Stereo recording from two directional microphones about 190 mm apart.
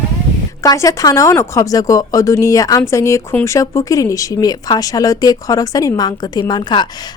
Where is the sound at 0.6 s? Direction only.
20° left (ahead or behind).